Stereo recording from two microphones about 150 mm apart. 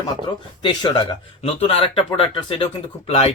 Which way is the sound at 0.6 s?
35° left (ahead or behind).